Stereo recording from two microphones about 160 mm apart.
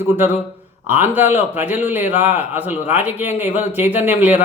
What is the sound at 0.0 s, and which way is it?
Speech, 15° right (ahead or behind).